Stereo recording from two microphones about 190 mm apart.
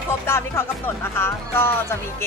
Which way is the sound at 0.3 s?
15° left (ahead or behind).